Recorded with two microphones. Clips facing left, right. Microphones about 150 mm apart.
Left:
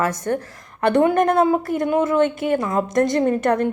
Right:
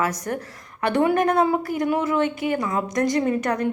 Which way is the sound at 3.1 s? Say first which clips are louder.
Left 3 dB; 50° left (ahead or behind).